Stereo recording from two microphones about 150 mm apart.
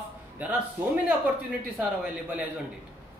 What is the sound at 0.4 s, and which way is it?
Speech, 10° right (ahead or behind).